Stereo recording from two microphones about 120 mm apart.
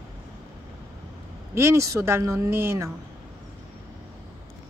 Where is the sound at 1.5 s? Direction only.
25° right (ahead or behind).